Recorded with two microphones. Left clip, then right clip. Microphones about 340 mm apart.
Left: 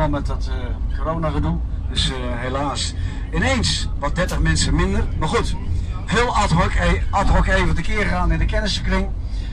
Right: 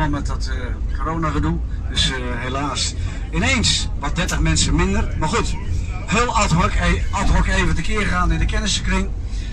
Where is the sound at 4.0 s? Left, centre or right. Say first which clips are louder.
Left 1 dB; centre.